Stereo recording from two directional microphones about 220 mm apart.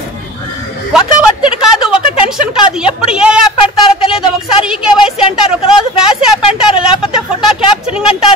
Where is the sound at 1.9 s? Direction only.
25° left (ahead or behind).